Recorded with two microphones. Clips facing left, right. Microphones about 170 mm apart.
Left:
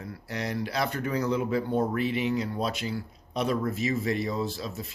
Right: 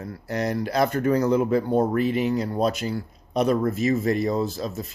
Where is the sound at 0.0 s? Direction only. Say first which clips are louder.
Right 7 dB; 45° right (ahead or behind).